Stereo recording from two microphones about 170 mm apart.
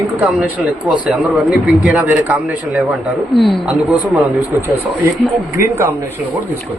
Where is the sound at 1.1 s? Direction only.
5° right (ahead or behind).